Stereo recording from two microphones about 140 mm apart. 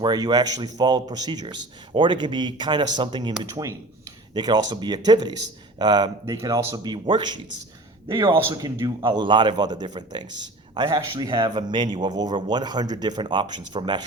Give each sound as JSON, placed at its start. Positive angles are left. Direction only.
{"t": 0.0, "sound": "a man's voice", "side_deg": -30}
{"t": 3.5, "sound": "a man's voice", "side_deg": -25}